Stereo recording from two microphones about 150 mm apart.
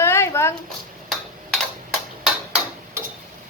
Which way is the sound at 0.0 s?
15° left (ahead or behind).